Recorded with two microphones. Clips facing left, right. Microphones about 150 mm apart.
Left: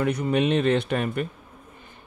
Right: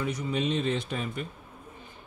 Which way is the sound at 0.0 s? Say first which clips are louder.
Left 7 dB; 65° left (ahead or behind).